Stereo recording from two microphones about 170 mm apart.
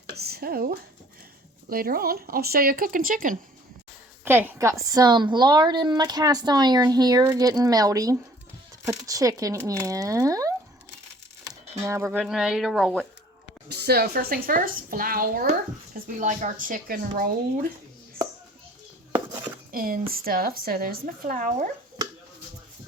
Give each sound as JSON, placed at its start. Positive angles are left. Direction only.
{"t": 0.1, "sound": "a sound", "side_deg": -65}
{"t": 1.7, "sound": "speech", "side_deg": -60}
{"t": 4.2, "sound": "a woman's voice", "side_deg": -10}
{"t": 11.9, "sound": "speech", "side_deg": -15}
{"t": 12.1, "sound": "speech", "side_deg": 0}
{"t": 13.7, "sound": "speech", "side_deg": -70}
{"t": 19.7, "sound": "speech", "side_deg": -60}